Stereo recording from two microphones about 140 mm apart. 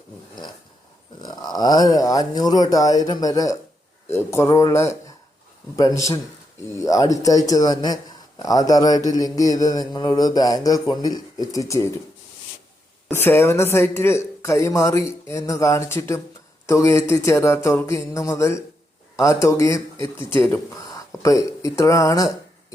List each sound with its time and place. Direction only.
1.2 s speech: 30° left (ahead or behind)
13.1 s speech: 15° left (ahead or behind)